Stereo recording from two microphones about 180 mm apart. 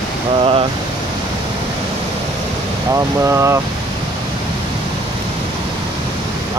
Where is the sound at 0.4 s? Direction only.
30° right (ahead or behind).